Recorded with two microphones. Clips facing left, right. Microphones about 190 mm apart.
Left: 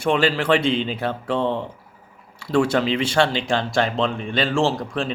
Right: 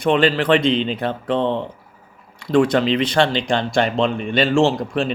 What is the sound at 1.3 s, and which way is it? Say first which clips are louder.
Speech: right 3 dB; 20° right (ahead or behind).